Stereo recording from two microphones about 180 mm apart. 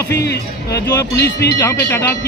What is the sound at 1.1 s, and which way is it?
Speech, 65° left (ahead or behind).